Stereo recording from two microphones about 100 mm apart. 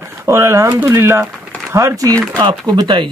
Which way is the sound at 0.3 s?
30° right (ahead or behind).